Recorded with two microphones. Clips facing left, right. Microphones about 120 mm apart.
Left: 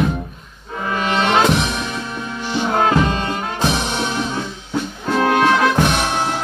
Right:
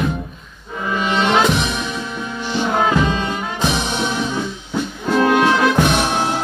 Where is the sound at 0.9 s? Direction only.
Centre (ahead or behind).